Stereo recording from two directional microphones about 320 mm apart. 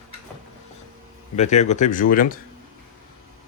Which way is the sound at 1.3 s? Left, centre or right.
Left.